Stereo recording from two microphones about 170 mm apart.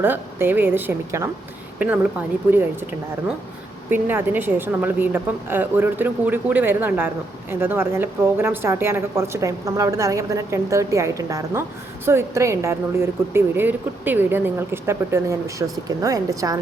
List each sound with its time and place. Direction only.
0.0 s speech: 10° right (ahead or behind)
3.8 s speech: 10° right (ahead or behind)